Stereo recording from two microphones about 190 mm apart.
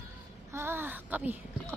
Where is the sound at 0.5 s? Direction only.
10° right (ahead or behind).